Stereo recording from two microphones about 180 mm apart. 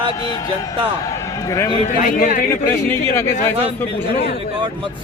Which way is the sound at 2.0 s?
50° left (ahead or behind).